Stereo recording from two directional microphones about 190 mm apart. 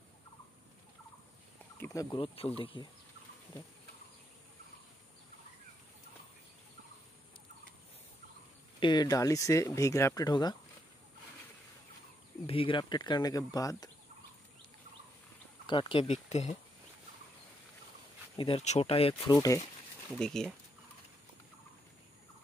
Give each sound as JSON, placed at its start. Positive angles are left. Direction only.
{"t": 1.8, "sound": "speech", "side_deg": 15}
{"t": 2.2, "sound": "speech", "side_deg": 30}
{"t": 8.7, "sound": "speech", "side_deg": 25}
{"t": 12.4, "sound": "speech", "side_deg": 30}
{"t": 15.6, "sound": "speech", "side_deg": 25}
{"t": 18.4, "sound": "speech", "side_deg": 35}
{"t": 20.1, "sound": "speech", "side_deg": 5}